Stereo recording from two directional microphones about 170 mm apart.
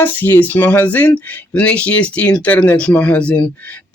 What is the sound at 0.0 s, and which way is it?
Speech, 10° left (ahead or behind).